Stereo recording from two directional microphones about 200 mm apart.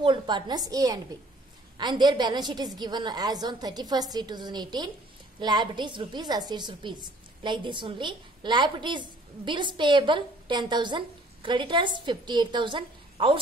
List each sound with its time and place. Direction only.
0.0 s a woman's voice: 25° right (ahead or behind)